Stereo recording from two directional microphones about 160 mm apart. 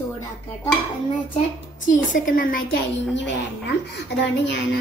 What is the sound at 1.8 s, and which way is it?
A woman's voice, 55° left (ahead or behind).